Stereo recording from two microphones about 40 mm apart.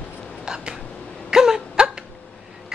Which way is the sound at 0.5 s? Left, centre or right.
Centre.